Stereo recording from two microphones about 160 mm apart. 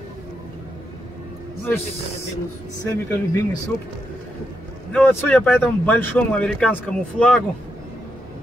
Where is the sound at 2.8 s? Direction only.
20° left (ahead or behind).